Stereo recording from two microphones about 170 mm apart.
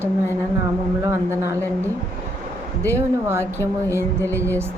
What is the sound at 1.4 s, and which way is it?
Speech, 15° right (ahead or behind).